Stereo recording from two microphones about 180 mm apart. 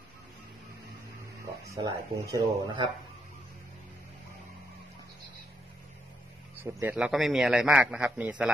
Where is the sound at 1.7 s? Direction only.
20° right (ahead or behind).